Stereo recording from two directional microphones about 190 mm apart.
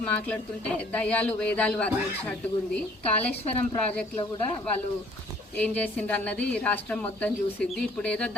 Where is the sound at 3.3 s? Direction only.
35° left (ahead or behind).